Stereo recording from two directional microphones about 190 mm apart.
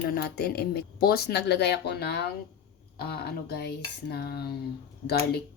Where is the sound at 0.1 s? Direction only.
55° left (ahead or behind).